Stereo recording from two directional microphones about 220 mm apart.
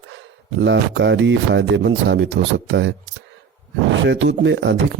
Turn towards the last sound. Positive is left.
turn(degrees=-55)  # may be behind; listen again after turning